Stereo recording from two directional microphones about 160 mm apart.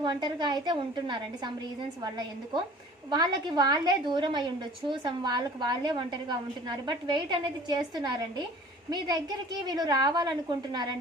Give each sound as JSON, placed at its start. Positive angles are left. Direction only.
{"t": 0.0, "sound": "a woman's voice", "side_deg": -30}
{"t": 3.1, "sound": "a woman's voice", "side_deg": -25}